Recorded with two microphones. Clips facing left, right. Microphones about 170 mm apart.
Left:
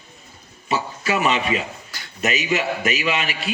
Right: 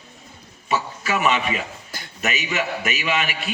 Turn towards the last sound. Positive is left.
turn(degrees=35)  # may be behind; listen again after turning